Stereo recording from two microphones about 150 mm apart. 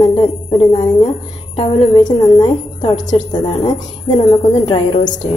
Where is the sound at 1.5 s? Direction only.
30° left (ahead or behind).